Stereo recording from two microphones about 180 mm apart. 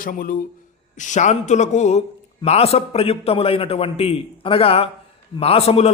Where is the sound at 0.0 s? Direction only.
50° left (ahead or behind).